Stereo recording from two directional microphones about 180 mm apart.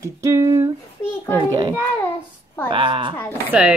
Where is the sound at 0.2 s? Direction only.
15° right (ahead or behind).